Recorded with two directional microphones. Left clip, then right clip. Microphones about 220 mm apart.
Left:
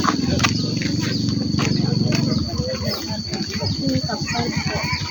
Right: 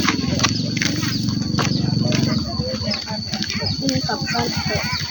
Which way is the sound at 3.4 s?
20° right (ahead or behind).